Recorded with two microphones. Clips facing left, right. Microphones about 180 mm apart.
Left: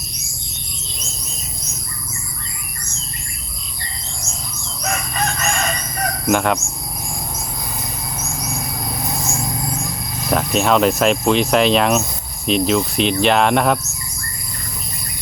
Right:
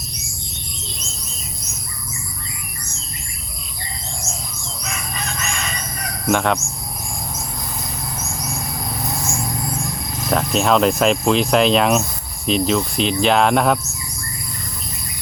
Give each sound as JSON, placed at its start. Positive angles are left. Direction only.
{"t": 4.8, "sound": "chicken", "side_deg": 50}
{"t": 6.2, "sound": "speech", "side_deg": 0}
{"t": 10.2, "sound": "speech", "side_deg": 0}